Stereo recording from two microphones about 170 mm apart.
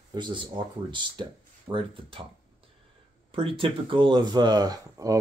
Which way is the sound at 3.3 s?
30° right (ahead or behind).